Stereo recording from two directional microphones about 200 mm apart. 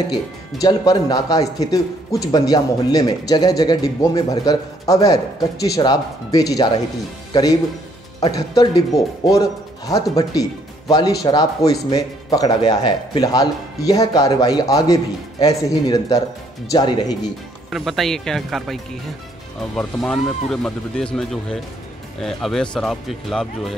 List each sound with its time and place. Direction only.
0.6 s a man's voice: 20° left (ahead or behind)
8.2 s a man's voice: 20° left (ahead or behind)
17.6 s speech: centre (ahead or behind)